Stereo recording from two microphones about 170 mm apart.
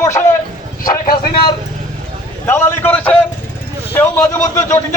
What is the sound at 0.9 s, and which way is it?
Speech, 60° left (ahead or behind).